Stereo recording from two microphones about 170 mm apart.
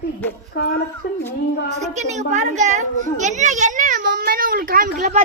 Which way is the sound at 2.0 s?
45° right (ahead or behind).